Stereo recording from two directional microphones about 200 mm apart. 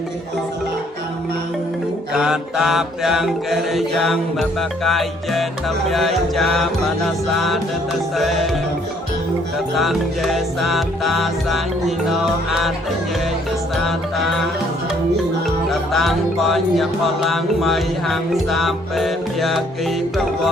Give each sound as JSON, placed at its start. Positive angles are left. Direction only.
{"t": 2.1, "sound": "music", "side_deg": 0}
{"t": 9.7, "sound": "music", "side_deg": 0}
{"t": 13.7, "sound": "music", "side_deg": 0}
{"t": 15.4, "sound": "music", "side_deg": 0}